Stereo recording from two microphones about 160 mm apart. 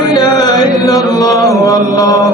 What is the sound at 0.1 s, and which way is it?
Chant, 25° left (ahead or behind).